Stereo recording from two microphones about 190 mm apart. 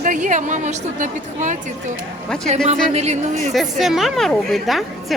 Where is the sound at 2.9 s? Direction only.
35° right (ahead or behind).